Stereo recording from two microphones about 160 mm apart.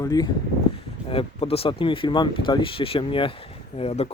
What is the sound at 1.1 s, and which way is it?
Speech, 35° left (ahead or behind).